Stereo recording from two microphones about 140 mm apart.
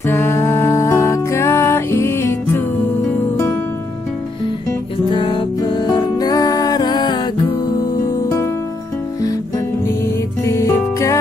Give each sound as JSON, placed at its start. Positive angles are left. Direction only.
{"t": 0.0, "sound": "music", "side_deg": 15}
{"t": 5.1, "sound": "music", "side_deg": 35}
{"t": 10.4, "sound": "music", "side_deg": 20}